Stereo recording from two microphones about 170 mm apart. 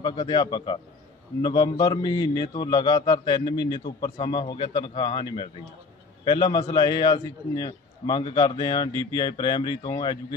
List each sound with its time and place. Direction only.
0.0 s a man's voice: 25° left (ahead or behind)